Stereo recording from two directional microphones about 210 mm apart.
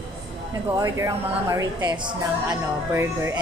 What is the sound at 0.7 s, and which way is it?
A woman's voice, 15° right (ahead or behind).